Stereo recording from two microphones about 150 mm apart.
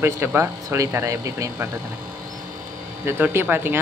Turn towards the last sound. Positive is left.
turn(degrees=-15)  # may be behind; listen again after turning